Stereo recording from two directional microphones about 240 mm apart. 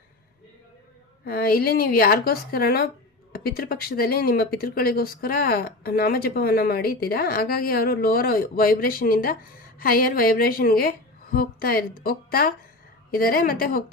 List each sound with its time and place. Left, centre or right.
1.2 s speech: left